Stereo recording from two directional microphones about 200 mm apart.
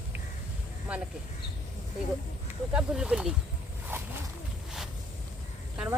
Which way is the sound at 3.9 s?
10° right (ahead or behind).